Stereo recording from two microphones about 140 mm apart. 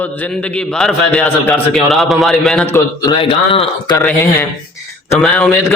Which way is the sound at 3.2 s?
40° left (ahead or behind).